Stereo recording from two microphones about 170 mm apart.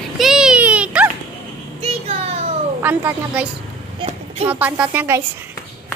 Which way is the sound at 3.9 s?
35° right (ahead or behind).